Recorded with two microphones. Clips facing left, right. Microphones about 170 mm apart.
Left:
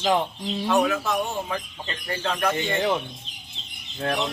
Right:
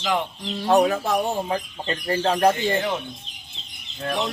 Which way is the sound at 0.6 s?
35° right (ahead or behind).